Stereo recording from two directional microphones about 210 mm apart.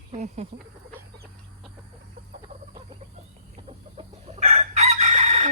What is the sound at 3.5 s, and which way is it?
Chicken, 30° right (ahead or behind).